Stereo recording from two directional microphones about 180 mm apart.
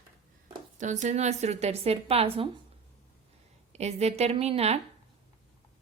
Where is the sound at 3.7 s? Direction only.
35° right (ahead or behind).